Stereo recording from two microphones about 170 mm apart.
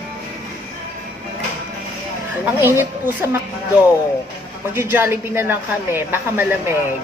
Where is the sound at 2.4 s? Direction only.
10° right (ahead or behind).